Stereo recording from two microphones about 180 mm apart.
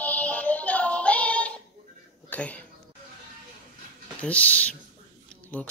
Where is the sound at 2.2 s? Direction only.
5° left (ahead or behind).